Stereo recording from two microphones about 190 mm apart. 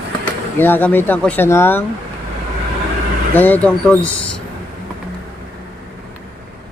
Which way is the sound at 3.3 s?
10° left (ahead or behind).